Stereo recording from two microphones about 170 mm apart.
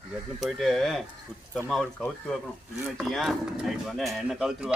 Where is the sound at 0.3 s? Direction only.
Centre (ahead or behind).